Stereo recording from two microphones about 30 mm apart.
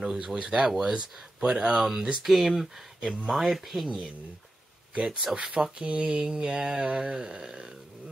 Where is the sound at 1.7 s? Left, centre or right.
Centre.